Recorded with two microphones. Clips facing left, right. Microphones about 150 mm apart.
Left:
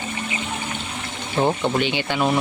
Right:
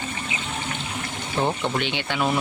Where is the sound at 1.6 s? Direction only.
Centre (ahead or behind).